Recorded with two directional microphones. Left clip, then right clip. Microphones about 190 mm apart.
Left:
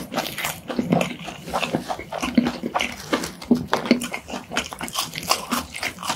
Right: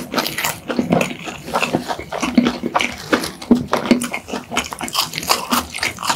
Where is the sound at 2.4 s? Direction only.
25° right (ahead or behind).